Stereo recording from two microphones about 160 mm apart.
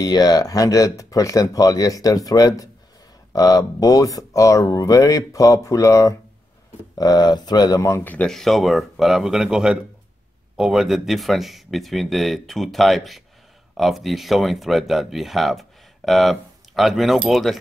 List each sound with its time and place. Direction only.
0.0 s speech: 25° left (ahead or behind); by 17.6 s centre (ahead or behind)